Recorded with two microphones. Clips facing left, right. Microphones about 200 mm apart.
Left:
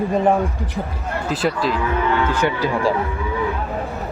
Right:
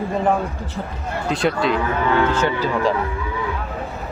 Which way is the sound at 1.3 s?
Centre (ahead or behind).